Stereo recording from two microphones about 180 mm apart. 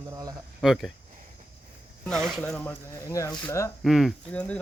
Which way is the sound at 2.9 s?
15° left (ahead or behind).